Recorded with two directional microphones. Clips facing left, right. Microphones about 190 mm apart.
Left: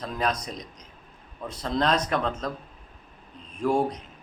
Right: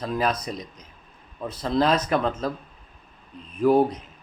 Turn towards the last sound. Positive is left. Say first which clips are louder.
# right 6 dB
turn(degrees=-5)  # may be behind; listen again after turning